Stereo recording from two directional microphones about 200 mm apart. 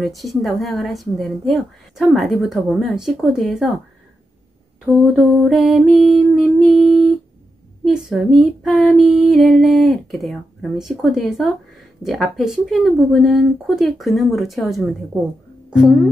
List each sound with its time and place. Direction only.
0.0 s speech: centre (ahead or behind)
4.9 s speech: centre (ahead or behind)